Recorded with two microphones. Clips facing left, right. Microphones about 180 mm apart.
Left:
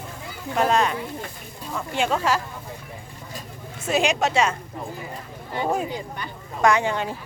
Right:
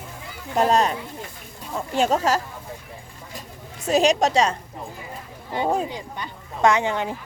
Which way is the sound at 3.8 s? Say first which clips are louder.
Right 3 dB; 40° right (ahead or behind).